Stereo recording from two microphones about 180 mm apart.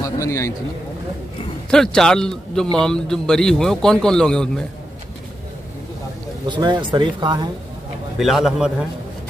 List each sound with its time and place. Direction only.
0.0 s a man's voice: 15° left (ahead or behind)
1.7 s a man's voice: 5° left (ahead or behind)
6.4 s speech: 25° right (ahead or behind)
8.2 s a man's voice: centre (ahead or behind)